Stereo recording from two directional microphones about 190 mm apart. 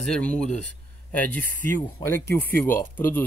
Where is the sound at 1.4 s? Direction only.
45° right (ahead or behind).